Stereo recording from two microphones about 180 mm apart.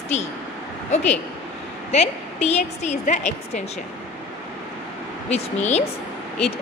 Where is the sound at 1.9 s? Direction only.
35° left (ahead or behind).